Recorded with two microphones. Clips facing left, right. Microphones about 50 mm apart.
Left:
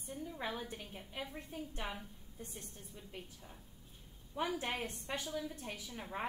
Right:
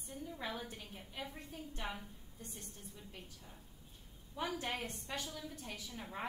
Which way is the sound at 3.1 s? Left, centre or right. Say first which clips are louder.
Left 3 dB; centre.